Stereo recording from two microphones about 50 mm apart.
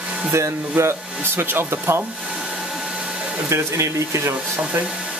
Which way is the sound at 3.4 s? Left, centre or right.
Right.